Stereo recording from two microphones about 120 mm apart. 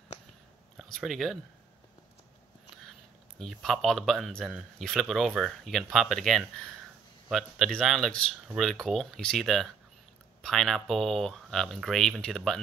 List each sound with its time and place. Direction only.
0.7 s speech: centre (ahead or behind)
3.3 s speech: centre (ahead or behind)